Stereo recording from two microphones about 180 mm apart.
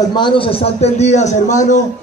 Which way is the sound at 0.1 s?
25° left (ahead or behind).